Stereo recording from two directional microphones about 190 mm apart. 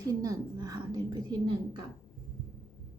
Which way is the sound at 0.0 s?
20° right (ahead or behind).